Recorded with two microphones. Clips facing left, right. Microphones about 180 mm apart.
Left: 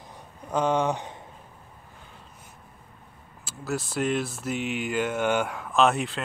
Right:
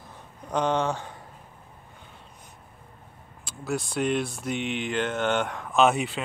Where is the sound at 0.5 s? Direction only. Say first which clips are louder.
Left 1 dB; 10° left (ahead or behind).